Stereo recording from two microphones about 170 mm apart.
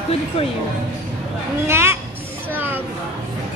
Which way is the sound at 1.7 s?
15° right (ahead or behind).